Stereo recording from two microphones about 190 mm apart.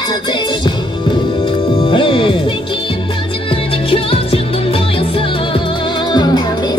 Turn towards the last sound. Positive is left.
turn(degrees=20)  # may be behind; listen again after turning